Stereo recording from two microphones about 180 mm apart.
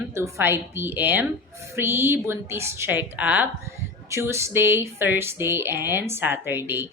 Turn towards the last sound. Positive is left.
turn(degrees=-10)  # may be behind; listen again after turning